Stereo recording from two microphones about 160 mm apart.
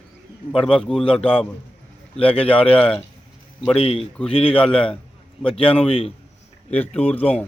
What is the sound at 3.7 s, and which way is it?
Speech, 35° left (ahead or behind).